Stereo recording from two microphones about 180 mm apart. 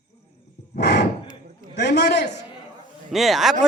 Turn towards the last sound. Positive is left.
turn(degrees=0)  # may be behind; listen again after turning